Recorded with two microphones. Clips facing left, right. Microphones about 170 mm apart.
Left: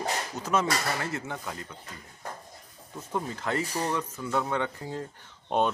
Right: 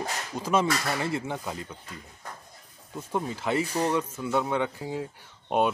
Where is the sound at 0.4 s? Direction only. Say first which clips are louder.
Right 3 dB; 10° right (ahead or behind).